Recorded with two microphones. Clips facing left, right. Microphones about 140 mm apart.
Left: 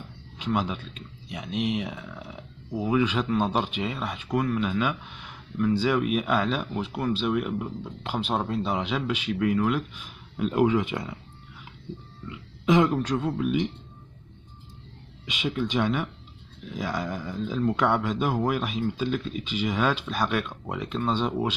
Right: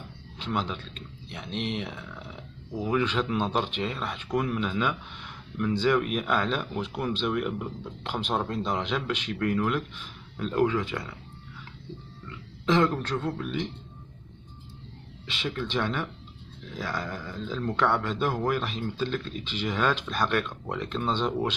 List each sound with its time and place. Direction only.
0.5 s speech: 10° left (ahead or behind)
12.3 s speech: 15° left (ahead or behind)
15.2 s speech: 10° left (ahead or behind)